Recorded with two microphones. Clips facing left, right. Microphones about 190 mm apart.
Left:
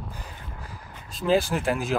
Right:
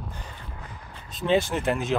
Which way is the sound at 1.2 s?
Centre (ahead or behind).